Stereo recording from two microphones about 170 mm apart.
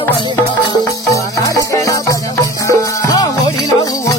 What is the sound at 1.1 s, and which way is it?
Music, 20° left (ahead or behind).